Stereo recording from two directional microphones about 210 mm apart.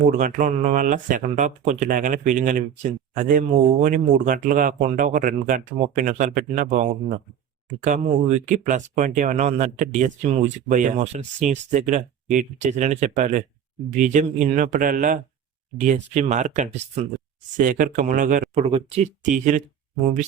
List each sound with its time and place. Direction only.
0.0 s speech: 40° right (ahead or behind)